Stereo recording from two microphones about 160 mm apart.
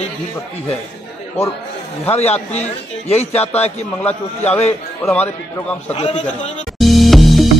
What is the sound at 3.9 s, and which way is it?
A man's voice, 10° left (ahead or behind).